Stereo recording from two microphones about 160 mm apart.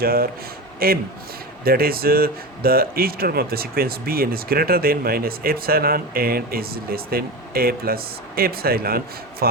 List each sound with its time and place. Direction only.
0.0 s a man's voice: 70° right (ahead or behind)